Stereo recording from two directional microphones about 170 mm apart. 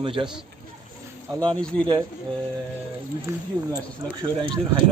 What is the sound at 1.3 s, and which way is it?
Speech, 20° right (ahead or behind).